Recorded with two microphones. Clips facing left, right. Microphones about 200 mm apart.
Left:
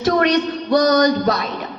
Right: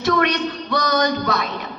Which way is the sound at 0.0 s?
40° left (ahead or behind).